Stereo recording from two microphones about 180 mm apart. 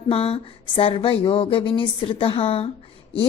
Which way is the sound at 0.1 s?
30° left (ahead or behind).